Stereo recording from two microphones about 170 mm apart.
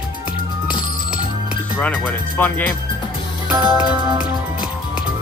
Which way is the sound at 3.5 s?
5° right (ahead or behind).